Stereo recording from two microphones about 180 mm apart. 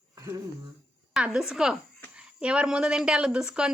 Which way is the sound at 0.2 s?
20° right (ahead or behind).